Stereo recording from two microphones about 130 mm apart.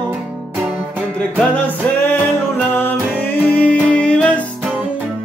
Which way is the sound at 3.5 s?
10° left (ahead or behind).